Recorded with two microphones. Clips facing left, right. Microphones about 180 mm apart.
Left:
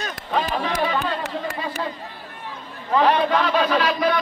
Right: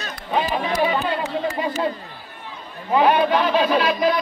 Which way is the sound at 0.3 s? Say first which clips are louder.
Right 2 dB; 10° right (ahead or behind).